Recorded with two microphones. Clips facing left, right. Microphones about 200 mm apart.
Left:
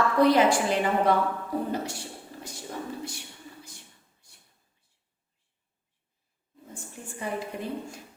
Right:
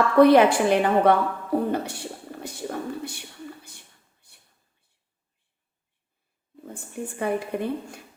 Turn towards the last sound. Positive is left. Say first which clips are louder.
# right 7 dB
turn(degrees=-60)  # may be behind; listen again after turning